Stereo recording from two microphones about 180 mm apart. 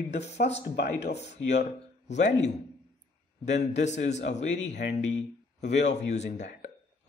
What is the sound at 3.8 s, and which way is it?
Speech, 40° left (ahead or behind).